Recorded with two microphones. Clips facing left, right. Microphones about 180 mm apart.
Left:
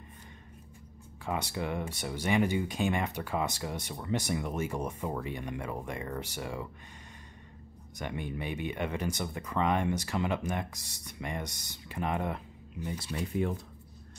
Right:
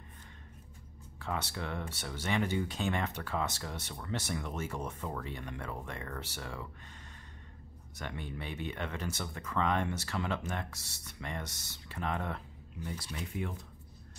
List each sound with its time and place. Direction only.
1.2 s speech: 15° left (ahead or behind)
7.9 s speech: 15° left (ahead or behind)